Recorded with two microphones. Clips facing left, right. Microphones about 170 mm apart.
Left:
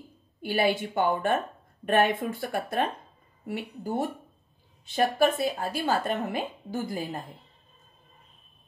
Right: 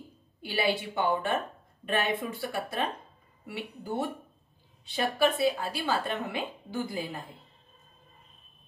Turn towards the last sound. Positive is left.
turn(degrees=45)  # may be behind; listen again after turning